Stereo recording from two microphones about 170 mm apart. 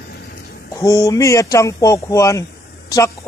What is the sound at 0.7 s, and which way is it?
Speech, 20° left (ahead or behind).